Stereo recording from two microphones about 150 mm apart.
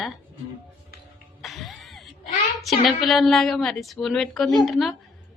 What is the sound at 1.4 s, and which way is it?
Music, centre (ahead or behind).